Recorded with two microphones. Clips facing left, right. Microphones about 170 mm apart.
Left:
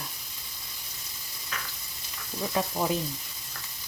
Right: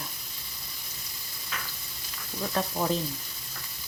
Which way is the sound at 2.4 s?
5° left (ahead or behind).